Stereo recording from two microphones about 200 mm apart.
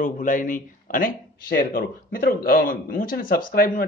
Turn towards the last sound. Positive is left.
turn(degrees=50)  # may be behind; listen again after turning